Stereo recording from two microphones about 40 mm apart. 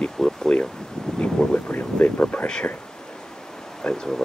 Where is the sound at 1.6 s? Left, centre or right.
Left.